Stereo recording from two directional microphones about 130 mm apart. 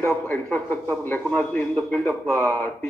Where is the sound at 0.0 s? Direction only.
15° left (ahead or behind).